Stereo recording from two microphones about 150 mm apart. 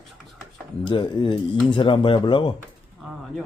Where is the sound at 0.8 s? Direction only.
30° left (ahead or behind).